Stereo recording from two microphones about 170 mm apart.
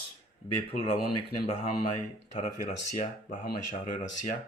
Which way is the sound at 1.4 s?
40° left (ahead or behind).